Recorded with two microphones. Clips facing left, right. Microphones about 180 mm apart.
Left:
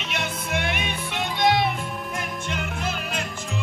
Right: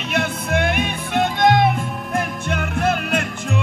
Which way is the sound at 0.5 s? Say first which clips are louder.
Right 7 dB; 55° right (ahead or behind).